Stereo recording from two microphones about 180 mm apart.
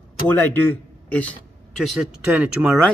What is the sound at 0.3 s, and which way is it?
Speech, 10° left (ahead or behind).